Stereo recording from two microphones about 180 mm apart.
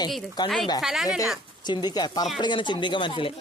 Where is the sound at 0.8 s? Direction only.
Centre (ahead or behind).